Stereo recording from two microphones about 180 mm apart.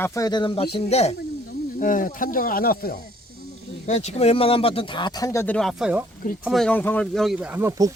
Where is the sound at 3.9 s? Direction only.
40° left (ahead or behind); by 5.6 s 15° left (ahead or behind).